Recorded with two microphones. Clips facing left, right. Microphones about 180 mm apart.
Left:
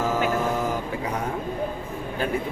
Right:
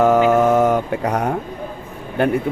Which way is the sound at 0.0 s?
70° right (ahead or behind).